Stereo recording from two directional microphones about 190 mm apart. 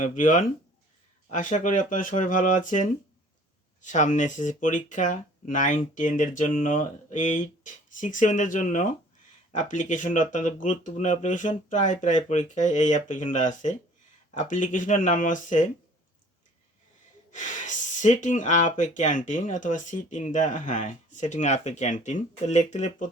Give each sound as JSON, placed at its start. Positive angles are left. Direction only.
{"t": 0.0, "sound": "speech", "side_deg": 45}
{"t": 17.3, "sound": "speech", "side_deg": 40}